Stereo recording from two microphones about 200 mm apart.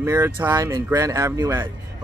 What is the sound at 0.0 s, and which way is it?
Speech, 10° right (ahead or behind).